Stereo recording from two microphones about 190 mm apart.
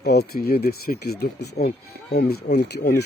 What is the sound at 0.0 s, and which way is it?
Speech, 55° left (ahead or behind).